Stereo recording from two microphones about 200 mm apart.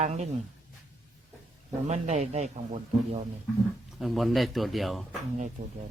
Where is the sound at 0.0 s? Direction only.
35° right (ahead or behind).